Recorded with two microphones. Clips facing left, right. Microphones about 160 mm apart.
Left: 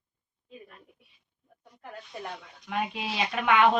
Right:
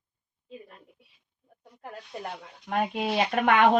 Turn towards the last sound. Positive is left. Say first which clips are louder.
# right 2 dB
turn(degrees=-50)  # may be behind; listen again after turning